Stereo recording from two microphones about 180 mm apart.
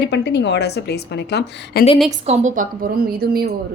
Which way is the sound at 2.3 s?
40° right (ahead or behind).